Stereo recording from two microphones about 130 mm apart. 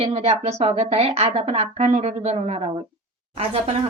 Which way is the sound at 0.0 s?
55° right (ahead or behind).